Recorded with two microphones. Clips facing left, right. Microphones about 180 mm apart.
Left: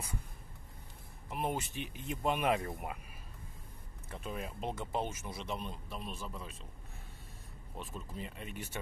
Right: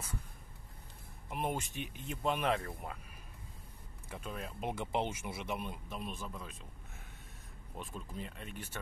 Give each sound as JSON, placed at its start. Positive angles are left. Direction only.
{"t": 1.3, "sound": "speech", "side_deg": 5}
{"t": 1.8, "sound": "speech", "side_deg": -45}
{"t": 2.2, "sound": "speech", "side_deg": 10}
{"t": 4.1, "sound": "speech", "side_deg": 5}
{"t": 4.6, "sound": "speech", "side_deg": -15}
{"t": 7.7, "sound": "speech", "side_deg": 0}